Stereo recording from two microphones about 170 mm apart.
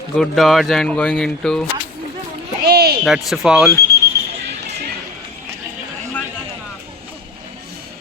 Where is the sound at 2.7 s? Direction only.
70° right (ahead or behind).